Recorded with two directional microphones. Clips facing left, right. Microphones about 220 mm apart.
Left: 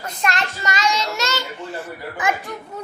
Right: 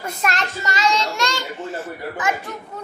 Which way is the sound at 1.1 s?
5° left (ahead or behind).